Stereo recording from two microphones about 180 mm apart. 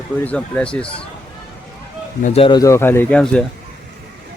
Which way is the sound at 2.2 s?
40° left (ahead or behind).